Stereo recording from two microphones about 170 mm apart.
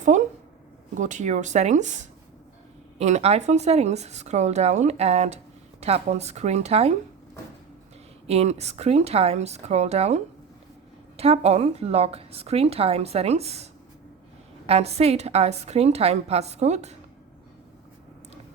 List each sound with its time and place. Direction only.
0.0 s a sound: 45° right (ahead or behind)
0.9 s a woman's voice: 45° right (ahead or behind)
8.3 s a woman's voice: 40° right (ahead or behind)
11.2 s a woman's voice: 35° right (ahead or behind)
14.7 s a woman's voice: 40° right (ahead or behind)